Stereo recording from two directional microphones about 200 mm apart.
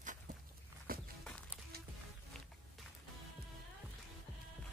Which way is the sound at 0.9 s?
45° right (ahead or behind).